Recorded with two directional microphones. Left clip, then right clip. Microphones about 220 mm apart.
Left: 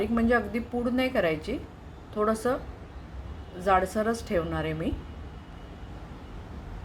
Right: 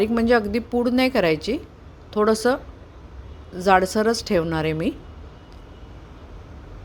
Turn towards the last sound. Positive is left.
turn(degrees=-45)  # may be behind; listen again after turning